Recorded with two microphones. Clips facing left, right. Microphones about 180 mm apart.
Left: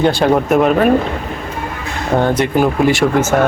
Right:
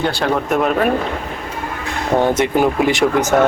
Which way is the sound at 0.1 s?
20° left (ahead or behind).